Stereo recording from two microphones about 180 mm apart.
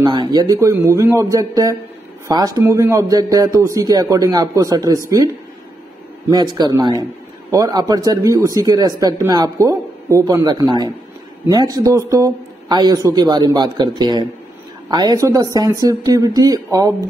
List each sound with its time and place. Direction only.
0.0 s speech: 25° right (ahead or behind)
6.3 s speech: 25° right (ahead or behind)